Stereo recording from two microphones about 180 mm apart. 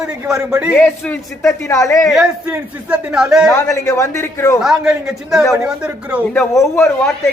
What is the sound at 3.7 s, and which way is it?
Speech, 15° left (ahead or behind).